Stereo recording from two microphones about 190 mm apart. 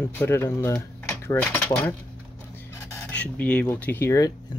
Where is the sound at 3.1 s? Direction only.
5° left (ahead or behind).